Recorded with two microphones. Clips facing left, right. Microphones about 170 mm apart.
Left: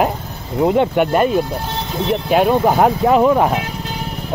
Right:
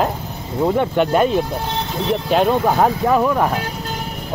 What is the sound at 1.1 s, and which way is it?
Speech, 5° left (ahead or behind).